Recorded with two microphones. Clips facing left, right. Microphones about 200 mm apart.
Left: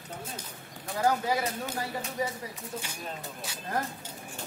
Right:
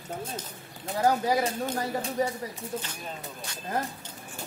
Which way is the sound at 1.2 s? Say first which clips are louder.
Right 4 dB; 35° right (ahead or behind).